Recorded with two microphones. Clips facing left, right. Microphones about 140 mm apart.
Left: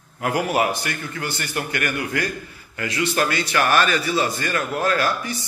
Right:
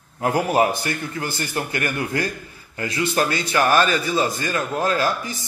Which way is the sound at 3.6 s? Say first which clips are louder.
Right 2 dB; 35° right (ahead or behind).